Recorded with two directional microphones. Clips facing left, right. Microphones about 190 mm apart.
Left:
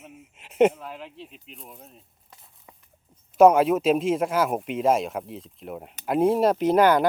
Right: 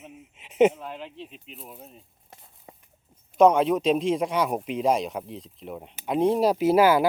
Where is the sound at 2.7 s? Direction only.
30° right (ahead or behind).